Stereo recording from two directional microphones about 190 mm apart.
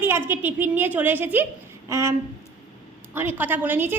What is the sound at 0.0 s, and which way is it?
A woman's voice, 10° right (ahead or behind).